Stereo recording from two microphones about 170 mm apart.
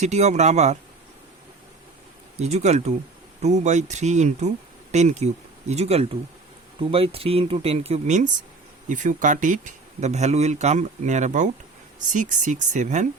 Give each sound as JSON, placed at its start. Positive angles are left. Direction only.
{"t": 0.0, "sound": "speech", "side_deg": -40}
{"t": 2.4, "sound": "speech", "side_deg": -40}